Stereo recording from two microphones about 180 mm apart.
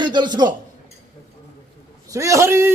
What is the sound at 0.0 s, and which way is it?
Speech, 25° right (ahead or behind).